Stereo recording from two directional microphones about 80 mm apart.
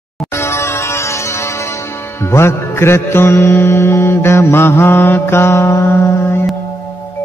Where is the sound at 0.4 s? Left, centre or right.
Left.